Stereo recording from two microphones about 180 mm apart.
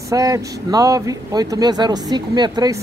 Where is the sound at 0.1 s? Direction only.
20° right (ahead or behind).